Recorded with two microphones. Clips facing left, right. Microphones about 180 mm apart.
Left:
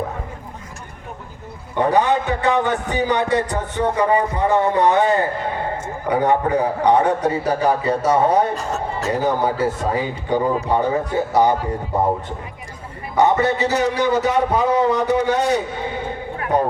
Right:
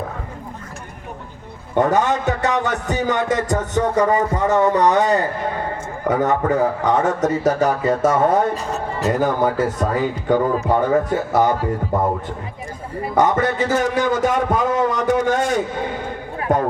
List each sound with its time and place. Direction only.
1.8 s a man's voice: 45° right (ahead or behind)
8.5 s speech: centre (ahead or behind)
9.2 s a man's voice: 50° right (ahead or behind)
13.1 s a man's voice: 50° right (ahead or behind)